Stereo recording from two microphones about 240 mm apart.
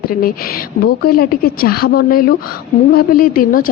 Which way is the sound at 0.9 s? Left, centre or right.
Left.